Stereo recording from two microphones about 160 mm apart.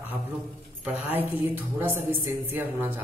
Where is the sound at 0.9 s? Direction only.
10° right (ahead or behind).